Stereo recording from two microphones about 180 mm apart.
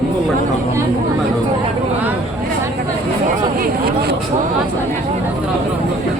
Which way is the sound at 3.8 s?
60° right (ahead or behind).